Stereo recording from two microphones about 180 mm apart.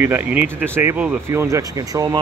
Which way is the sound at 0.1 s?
15° right (ahead or behind).